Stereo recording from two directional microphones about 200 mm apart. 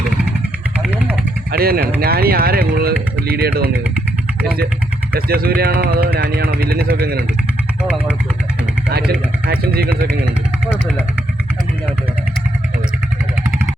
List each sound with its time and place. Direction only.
0.8 s vehicle: 5° right (ahead or behind)
1.5 s speech: 50° right (ahead or behind)
5.1 s speech: 50° right (ahead or behind)
8.9 s speech: 50° right (ahead or behind)